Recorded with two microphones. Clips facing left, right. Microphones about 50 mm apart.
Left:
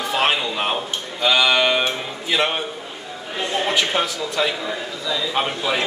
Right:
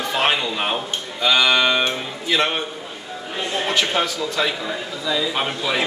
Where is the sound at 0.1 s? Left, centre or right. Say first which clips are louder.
Even; centre.